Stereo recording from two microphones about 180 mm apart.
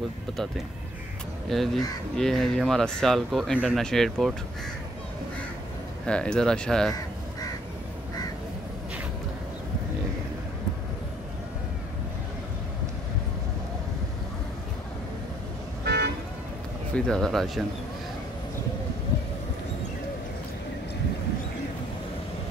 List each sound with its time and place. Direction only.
1.5 s speech: centre (ahead or behind)
6.0 s speech: 5° left (ahead or behind)
15.8 s vehicle: 65° right (ahead or behind)
16.9 s speech: centre (ahead or behind)